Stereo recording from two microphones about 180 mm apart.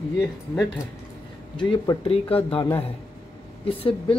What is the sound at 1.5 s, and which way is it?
Speech, 25° left (ahead or behind).